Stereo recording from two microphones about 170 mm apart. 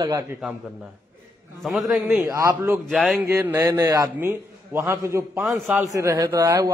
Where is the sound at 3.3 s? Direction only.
15° right (ahead or behind).